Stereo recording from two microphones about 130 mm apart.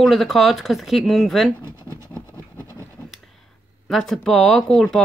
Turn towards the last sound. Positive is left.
turn(degrees=5)  # may be behind; listen again after turning